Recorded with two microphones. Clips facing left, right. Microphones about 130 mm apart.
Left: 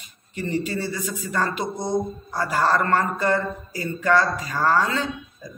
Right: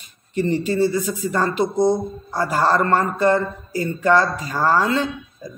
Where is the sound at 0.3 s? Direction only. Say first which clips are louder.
Right 6 dB; 30° right (ahead or behind).